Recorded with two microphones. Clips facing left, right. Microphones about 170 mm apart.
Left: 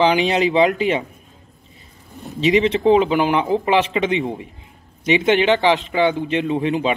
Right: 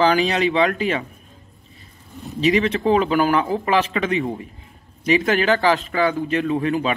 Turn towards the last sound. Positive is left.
turn(degrees=20)  # may be behind; listen again after turning